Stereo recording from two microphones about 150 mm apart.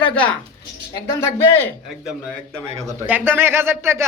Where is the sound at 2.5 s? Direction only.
20° right (ahead or behind).